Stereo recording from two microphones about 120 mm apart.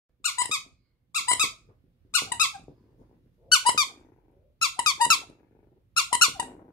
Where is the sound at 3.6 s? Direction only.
40° left (ahead or behind).